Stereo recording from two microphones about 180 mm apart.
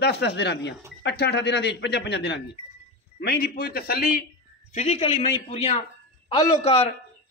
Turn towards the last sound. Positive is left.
turn(degrees=35)  # may be behind; listen again after turning